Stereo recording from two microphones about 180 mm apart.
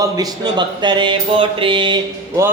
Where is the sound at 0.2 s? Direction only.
25° right (ahead or behind).